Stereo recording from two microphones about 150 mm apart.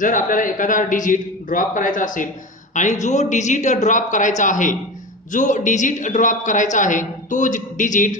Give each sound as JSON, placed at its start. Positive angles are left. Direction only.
{"t": 0.0, "sound": "a man's voice", "side_deg": 60}